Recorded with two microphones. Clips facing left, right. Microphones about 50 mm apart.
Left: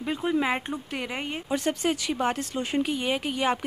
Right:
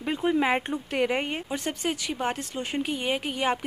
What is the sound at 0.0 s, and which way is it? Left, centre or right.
Speech, right.